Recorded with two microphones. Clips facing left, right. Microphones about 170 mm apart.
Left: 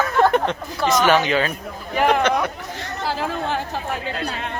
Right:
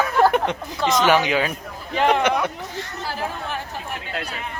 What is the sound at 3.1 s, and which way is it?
Chatter, 90° left.